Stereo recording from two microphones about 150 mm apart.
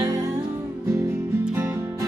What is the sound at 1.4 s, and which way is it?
Music, 15° right (ahead or behind).